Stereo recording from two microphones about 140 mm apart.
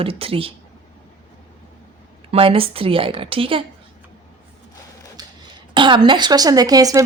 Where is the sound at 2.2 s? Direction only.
40° right (ahead or behind).